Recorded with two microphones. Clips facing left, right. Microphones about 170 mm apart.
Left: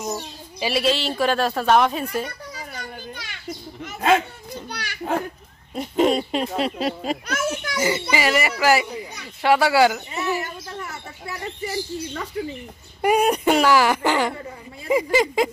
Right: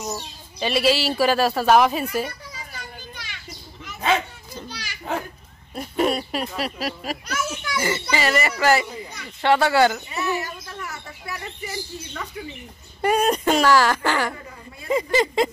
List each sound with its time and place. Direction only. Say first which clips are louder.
0.6 s speech: even; 5° left (ahead or behind)
0.8 s speech: right 3 dB; 5° right (ahead or behind)
2.5 s children playing: left 4 dB; 60° left (ahead or behind)
4.6 s children playing: left 3 dB; 60° left (ahead or behind)
5.8 s speech: left 3 dB; 20° left (ahead or behind)
7.2 s children playing: left 3 dB; 50° left (ahead or behind)
7.7 s a child's voice: even; 15° left (ahead or behind)
10.1 s bird: even; 25° left (ahead or behind)
13.0 s speech: left 2 dB; 10° left (ahead or behind)